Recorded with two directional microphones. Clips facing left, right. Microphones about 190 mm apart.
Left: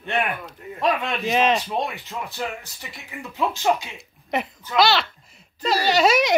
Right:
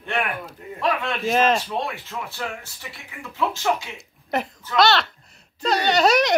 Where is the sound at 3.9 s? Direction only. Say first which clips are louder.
Even; centre (ahead or behind).